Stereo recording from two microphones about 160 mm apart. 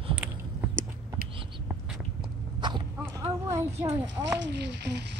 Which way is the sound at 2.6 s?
30° right (ahead or behind).